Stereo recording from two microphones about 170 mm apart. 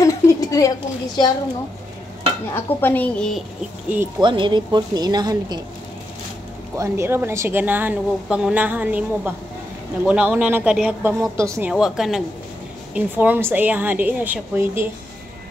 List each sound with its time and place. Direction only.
0.0 s a sound: 20° left (ahead or behind)
2.5 s a woman's voice: 10° left (ahead or behind)
4.2 s a woman's voice: 30° right (ahead or behind)
6.8 s a woman's voice: 15° right (ahead or behind)
11.7 s a woman's voice: centre (ahead or behind)